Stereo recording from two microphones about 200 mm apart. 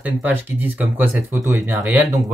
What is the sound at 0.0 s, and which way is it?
Speech, 10° right (ahead or behind).